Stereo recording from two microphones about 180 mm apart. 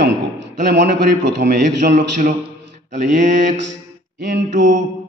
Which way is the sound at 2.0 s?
45° right (ahead or behind).